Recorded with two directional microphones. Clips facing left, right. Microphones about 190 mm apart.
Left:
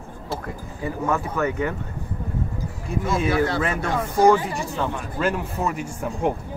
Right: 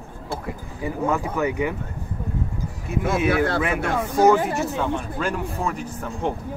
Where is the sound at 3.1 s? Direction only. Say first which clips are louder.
Right 1 dB; 60° right (ahead or behind).